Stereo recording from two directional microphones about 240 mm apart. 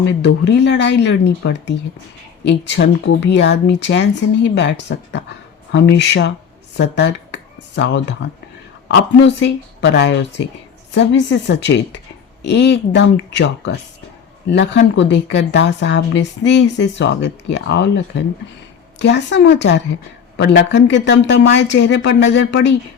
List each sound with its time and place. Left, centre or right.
0.0 s speech: left